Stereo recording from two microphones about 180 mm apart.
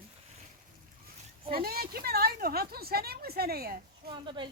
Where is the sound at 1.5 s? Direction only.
55° right (ahead or behind).